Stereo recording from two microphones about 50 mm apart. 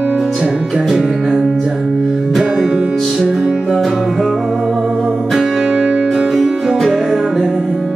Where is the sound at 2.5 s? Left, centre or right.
Centre.